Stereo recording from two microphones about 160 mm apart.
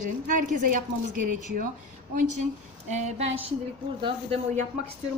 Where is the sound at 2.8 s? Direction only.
45° right (ahead or behind).